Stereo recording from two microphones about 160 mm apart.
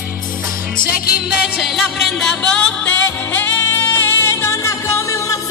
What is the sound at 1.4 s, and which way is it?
Music, centre (ahead or behind).